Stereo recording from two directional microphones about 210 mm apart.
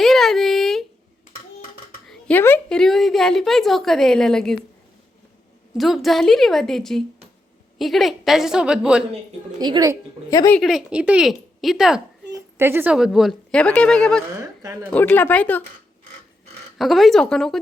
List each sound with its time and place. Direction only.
0.0 s a sound: centre (ahead or behind)
2.0 s a woman's voice: 5° left (ahead or behind)
5.7 s a woman's voice: centre (ahead or behind)
9.6 s a woman's voice: 20° right (ahead or behind)
10.2 s speech: 15° left (ahead or behind)
10.6 s a woman's voice: centre (ahead or behind)
14.3 s speech: 15° right (ahead or behind)
14.8 s speech: 10° left (ahead or behind)
16.7 s a woman's voice: centre (ahead or behind)